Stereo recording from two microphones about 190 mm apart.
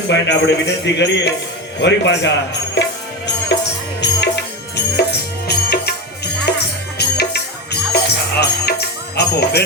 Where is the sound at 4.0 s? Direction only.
65° left (ahead or behind).